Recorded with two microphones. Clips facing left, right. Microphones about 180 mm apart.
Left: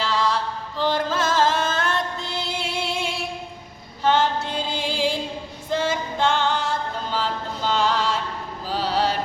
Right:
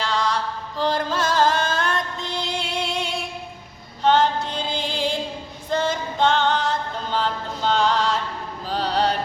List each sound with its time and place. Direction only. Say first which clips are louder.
0.0 s chant: left 1 dB; 5° left (ahead or behind)
0.8 s music: even; centre (ahead or behind)
5.7 s a capella: right 1 dB; 5° left (ahead or behind)
8.7 s mantra: right 1 dB; 5° left (ahead or behind)